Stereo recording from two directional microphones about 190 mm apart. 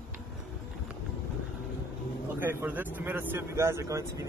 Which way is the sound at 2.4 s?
10° right (ahead or behind).